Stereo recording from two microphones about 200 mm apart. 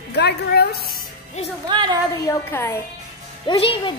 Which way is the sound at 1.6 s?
20° right (ahead or behind).